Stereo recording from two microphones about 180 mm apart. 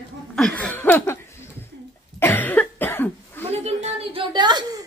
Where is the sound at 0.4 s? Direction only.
5° left (ahead or behind).